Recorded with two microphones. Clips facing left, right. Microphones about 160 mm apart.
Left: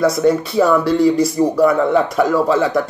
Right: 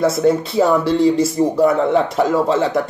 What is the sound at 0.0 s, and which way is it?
Speech, 25° right (ahead or behind).